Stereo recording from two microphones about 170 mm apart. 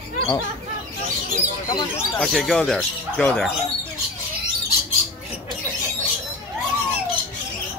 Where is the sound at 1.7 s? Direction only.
20° left (ahead or behind).